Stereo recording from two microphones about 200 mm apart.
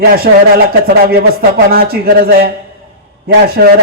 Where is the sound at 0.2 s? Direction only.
50° right (ahead or behind).